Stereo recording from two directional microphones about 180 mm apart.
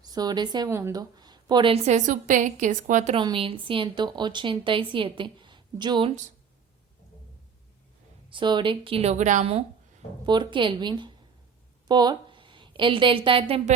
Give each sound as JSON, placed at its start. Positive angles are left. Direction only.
{"t": 0.0, "sound": "a woman's voice", "side_deg": -20}
{"t": 8.3, "sound": "a woman's voice", "side_deg": -25}